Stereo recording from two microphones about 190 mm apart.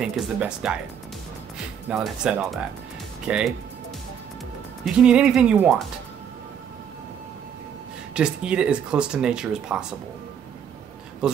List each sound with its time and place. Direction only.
0.0 s speech: centre (ahead or behind)
1.9 s speech: 5° right (ahead or behind)
4.8 s speech: 5° right (ahead or behind)
8.1 s speech: 5° right (ahead or behind)